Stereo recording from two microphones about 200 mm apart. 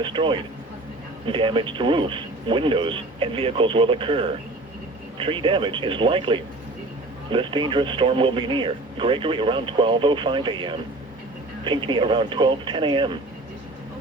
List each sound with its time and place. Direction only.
0.0 s speech: 25° right (ahead or behind)